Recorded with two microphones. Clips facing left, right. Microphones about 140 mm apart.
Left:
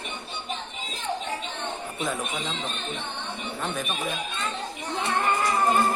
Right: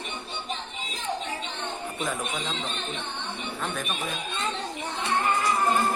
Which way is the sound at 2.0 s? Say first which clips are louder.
Left 1 dB; 5° left (ahead or behind).